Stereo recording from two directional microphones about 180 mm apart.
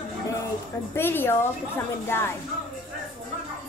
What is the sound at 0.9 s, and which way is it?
Speech, 10° left (ahead or behind).